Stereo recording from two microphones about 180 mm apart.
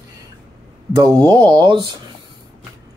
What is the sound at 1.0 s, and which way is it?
Speech, 20° right (ahead or behind).